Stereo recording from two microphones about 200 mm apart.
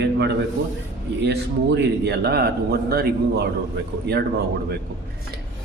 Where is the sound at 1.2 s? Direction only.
60° right (ahead or behind).